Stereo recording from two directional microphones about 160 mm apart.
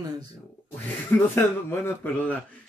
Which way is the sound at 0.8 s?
15° left (ahead or behind).